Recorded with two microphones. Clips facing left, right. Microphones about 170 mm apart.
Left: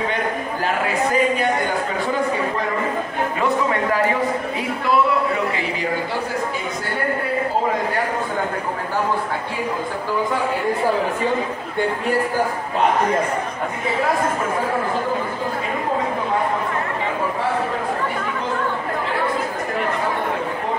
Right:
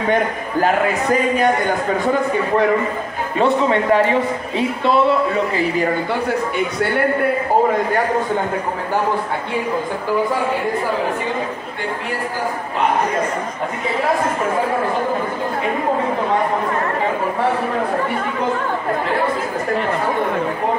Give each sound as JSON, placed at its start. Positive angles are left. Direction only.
{"t": 0.1, "sound": "a man's voice", "side_deg": -50}
{"t": 3.3, "sound": "a man's voice", "side_deg": -25}